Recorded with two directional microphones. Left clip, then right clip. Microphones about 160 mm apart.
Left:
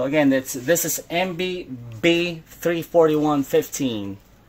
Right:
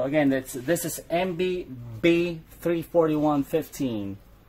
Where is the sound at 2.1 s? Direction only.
30° left (ahead or behind).